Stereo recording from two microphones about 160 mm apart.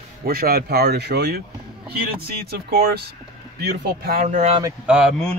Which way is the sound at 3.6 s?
90° right.